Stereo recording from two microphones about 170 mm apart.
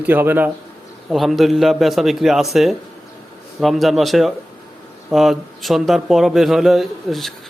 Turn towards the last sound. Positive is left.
turn(degrees=0)  # may be behind; listen again after turning